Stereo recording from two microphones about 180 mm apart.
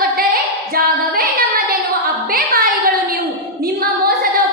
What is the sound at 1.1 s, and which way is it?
Child singing, 55° right (ahead or behind).